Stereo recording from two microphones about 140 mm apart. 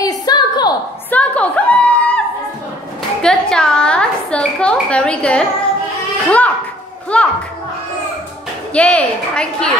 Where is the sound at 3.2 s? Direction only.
5° left (ahead or behind).